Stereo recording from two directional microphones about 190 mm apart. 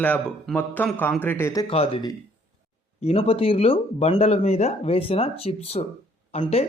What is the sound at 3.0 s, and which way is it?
Speech, 35° left (ahead or behind).